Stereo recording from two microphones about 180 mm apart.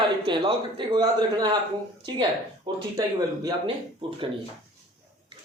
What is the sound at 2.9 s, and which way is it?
Speech, 20° right (ahead or behind).